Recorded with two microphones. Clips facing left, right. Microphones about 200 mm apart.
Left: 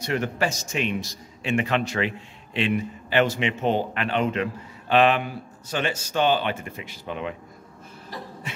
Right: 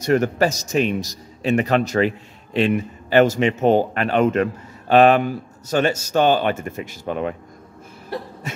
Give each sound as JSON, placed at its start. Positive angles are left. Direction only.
{"t": 0.0, "sound": "a man's voice", "side_deg": -45}
{"t": 8.1, "sound": "cough", "side_deg": -60}